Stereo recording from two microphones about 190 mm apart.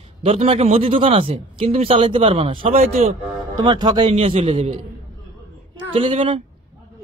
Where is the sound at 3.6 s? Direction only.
20° right (ahead or behind).